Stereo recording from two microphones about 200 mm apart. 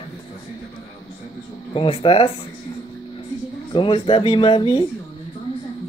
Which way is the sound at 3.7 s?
25° left (ahead or behind).